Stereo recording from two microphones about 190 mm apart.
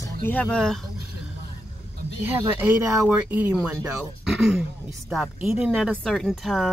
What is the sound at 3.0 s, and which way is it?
Speech, 10° right (ahead or behind).